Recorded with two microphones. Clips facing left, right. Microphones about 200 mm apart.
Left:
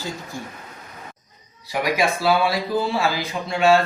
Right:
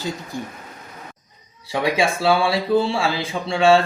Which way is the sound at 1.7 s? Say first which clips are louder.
Right 1 dB; 30° right (ahead or behind).